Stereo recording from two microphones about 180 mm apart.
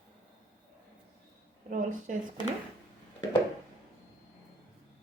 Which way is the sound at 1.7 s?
45° right (ahead or behind).